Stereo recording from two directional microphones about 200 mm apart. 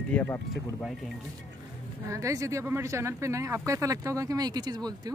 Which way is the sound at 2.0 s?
15° right (ahead or behind).